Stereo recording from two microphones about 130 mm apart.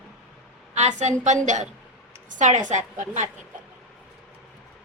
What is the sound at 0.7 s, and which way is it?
A woman's voice, 60° right (ahead or behind).